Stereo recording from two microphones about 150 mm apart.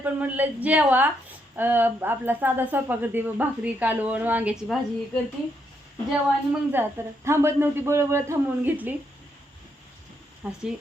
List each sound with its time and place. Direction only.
0.0 s speech: 10° right (ahead or behind)
6.1 s speech: 10° right (ahead or behind)
10.4 s speech: 5° right (ahead or behind)